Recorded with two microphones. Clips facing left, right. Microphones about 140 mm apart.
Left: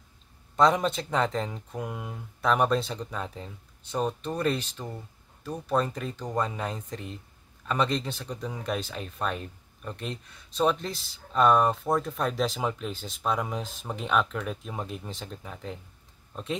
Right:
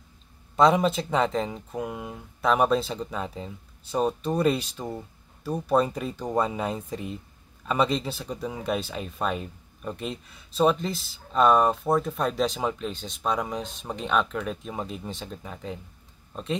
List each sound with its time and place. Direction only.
0.6 s speech: 5° right (ahead or behind)